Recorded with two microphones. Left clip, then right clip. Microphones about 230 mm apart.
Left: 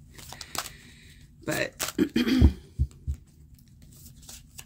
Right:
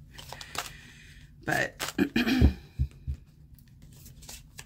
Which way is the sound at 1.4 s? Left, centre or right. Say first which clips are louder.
Right 1 dB; centre.